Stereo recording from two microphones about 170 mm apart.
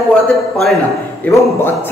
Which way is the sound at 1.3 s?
15° left (ahead or behind).